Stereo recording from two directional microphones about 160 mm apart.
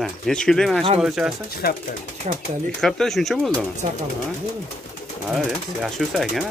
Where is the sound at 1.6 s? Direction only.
80° left.